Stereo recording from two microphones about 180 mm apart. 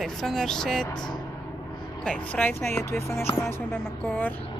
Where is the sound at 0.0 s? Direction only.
Centre (ahead or behind).